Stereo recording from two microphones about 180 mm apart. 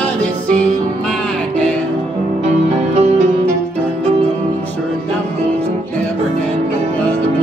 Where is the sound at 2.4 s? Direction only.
35° right (ahead or behind).